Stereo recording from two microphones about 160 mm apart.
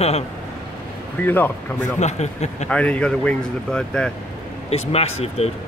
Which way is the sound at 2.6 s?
10° left (ahead or behind).